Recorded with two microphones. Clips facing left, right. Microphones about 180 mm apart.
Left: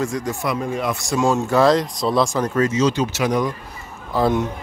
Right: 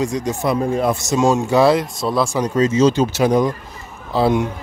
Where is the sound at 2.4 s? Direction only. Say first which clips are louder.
Right 4 dB; 20° right (ahead or behind).